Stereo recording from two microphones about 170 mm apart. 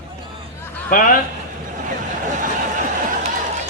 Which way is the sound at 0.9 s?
55° left (ahead or behind).